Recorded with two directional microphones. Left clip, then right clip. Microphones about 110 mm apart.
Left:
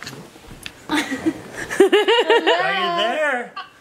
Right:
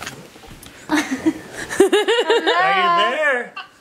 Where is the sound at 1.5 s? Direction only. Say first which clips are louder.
Even; 5° right (ahead or behind).